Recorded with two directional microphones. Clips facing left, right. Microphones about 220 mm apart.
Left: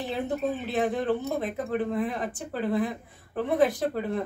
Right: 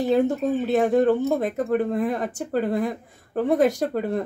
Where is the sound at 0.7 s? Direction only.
45° right (ahead or behind).